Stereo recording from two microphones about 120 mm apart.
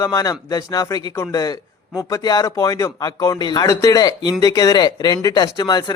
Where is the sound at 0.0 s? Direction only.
30° left (ahead or behind).